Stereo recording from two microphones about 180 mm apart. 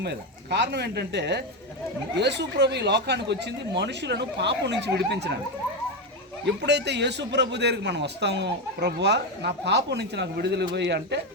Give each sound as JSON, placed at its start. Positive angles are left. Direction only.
{"t": 0.0, "sound": "a man's voice", "side_deg": -70}
{"t": 6.4, "sound": "a man's voice", "side_deg": -75}